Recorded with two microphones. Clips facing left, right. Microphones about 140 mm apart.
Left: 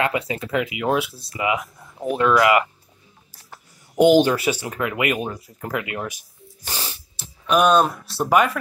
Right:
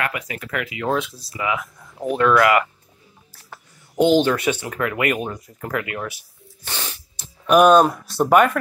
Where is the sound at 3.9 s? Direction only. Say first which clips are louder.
Left 2 dB; 10° left (ahead or behind).